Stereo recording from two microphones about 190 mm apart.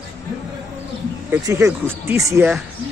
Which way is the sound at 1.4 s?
15° right (ahead or behind).